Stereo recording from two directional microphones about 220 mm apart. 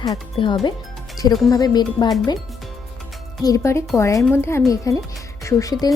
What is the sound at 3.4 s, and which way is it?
Speech, 15° left (ahead or behind).